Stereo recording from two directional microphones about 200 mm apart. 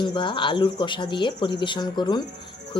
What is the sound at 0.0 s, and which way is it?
A woman's voice, 25° left (ahead or behind).